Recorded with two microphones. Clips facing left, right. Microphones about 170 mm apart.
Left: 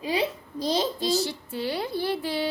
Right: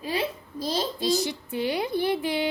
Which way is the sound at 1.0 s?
15° right (ahead or behind).